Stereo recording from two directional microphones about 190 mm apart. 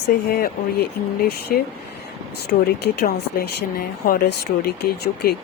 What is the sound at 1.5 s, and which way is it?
Speech, 50° left (ahead or behind).